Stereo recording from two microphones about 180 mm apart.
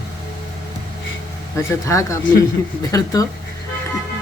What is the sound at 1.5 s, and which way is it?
Speech, 15° left (ahead or behind).